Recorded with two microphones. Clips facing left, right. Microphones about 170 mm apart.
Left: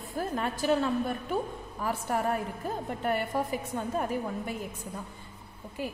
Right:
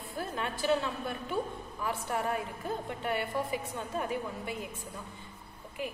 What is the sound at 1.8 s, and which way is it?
Speech, 40° left (ahead or behind).